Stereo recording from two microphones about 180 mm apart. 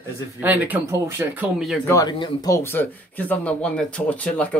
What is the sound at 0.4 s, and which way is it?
Speech, 10° right (ahead or behind).